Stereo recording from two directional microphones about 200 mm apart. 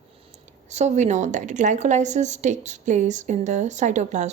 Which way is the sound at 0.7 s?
35° right (ahead or behind).